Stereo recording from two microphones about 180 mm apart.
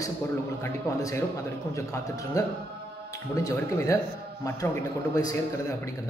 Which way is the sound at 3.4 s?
15° left (ahead or behind).